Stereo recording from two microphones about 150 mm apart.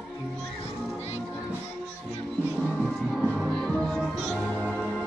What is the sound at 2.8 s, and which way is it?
Music, centre (ahead or behind).